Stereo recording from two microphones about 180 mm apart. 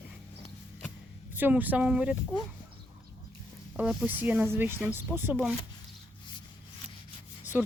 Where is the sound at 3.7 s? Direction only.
5° right (ahead or behind).